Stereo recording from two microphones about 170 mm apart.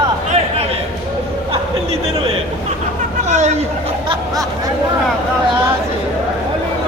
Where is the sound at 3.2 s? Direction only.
40° right (ahead or behind).